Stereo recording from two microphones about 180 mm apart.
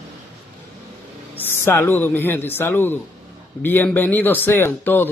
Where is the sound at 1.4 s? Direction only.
10° left (ahead or behind).